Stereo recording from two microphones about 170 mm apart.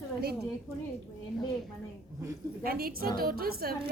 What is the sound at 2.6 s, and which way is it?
A woman's voice, 60° right (ahead or behind).